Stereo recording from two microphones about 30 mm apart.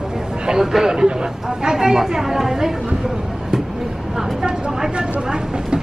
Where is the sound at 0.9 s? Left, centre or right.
Right.